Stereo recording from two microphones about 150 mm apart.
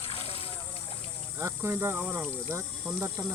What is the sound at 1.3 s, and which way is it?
Speech, 15° right (ahead or behind).